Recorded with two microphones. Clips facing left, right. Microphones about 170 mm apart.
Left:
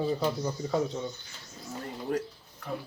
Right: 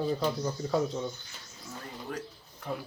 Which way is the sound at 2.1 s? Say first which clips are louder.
Left 8 dB; 45° left (ahead or behind).